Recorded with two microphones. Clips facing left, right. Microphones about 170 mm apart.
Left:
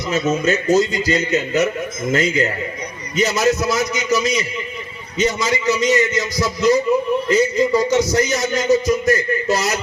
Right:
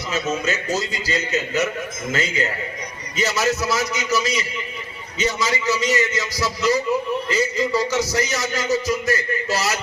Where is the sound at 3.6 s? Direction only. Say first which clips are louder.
Left 3 dB; 20° left (ahead or behind).